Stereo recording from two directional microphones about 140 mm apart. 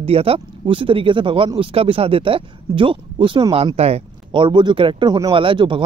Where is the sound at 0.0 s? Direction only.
45° right (ahead or behind).